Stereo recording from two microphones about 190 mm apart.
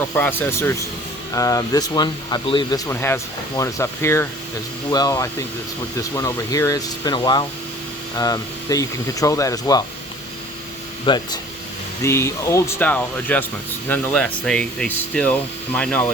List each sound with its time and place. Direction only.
0.1 s speech: 10° left (ahead or behind)
11.0 s speech: 25° left (ahead or behind); by 16.0 s 5° left (ahead or behind)